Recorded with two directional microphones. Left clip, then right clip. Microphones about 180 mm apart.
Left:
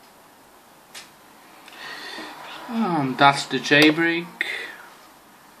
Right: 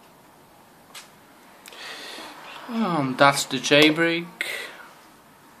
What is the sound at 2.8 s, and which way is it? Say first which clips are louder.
Speech: left 1 dB; 50° right (ahead or behind).